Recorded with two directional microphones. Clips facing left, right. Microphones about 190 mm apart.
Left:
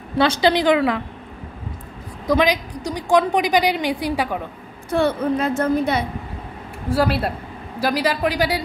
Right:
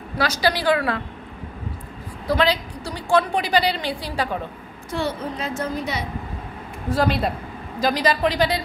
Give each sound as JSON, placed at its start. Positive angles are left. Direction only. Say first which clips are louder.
{"t": 0.2, "sound": "a woman's voice", "louder": "left 5 dB", "side_deg": 25}
{"t": 2.2, "sound": "a woman's voice", "louder": "left 3 dB", "side_deg": 15}
{"t": 4.9, "sound": "a woman's voice", "louder": "left 7 dB", "side_deg": 55}
{"t": 6.9, "sound": "a woman's voice", "louder": "left 1 dB", "side_deg": 5}